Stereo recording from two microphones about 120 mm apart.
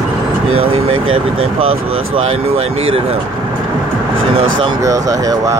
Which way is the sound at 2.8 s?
55° right (ahead or behind).